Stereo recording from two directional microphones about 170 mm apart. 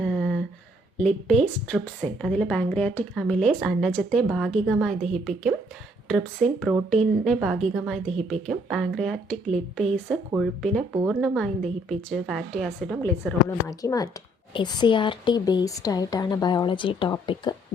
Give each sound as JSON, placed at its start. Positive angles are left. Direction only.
{"t": 0.0, "sound": "a sound", "side_deg": 0}
{"t": 0.9, "sound": "a woman's voice", "side_deg": 5}
{"t": 13.0, "sound": "a woman's voice", "side_deg": 15}